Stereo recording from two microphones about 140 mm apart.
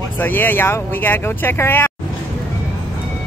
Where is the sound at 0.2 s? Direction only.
15° left (ahead or behind).